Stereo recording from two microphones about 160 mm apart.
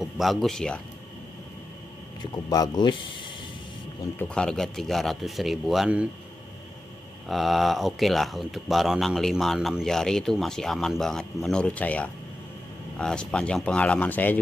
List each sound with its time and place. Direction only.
0.0 s speech: centre (ahead or behind)
2.3 s speech: 25° left (ahead or behind)
4.2 s speech: 5° left (ahead or behind)
7.2 s speech: centre (ahead or behind)